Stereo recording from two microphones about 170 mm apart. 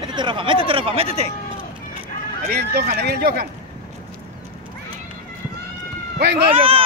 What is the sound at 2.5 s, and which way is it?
Speech, 60° right (ahead or behind).